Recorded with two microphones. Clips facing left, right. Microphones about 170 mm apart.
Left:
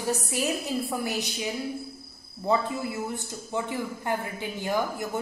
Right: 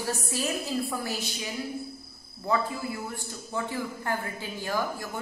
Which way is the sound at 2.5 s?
20° left (ahead or behind).